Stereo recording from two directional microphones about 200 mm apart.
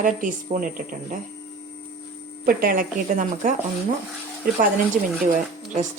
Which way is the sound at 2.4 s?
45° right (ahead or behind).